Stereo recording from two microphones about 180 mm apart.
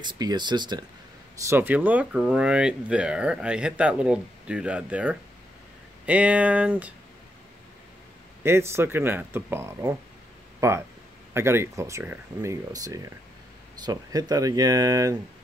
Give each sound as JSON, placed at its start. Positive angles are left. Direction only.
{"t": 0.0, "sound": "speech", "side_deg": -25}
{"t": 1.4, "sound": "speech", "side_deg": -15}
{"t": 8.5, "sound": "speech", "side_deg": -15}